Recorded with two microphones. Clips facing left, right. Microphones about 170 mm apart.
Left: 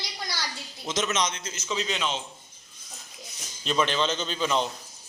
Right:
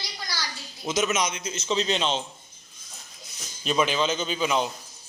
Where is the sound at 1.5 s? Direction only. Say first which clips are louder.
Right 5 dB; 30° right (ahead or behind).